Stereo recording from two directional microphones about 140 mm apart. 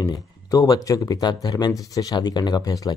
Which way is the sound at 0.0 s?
25° left (ahead or behind).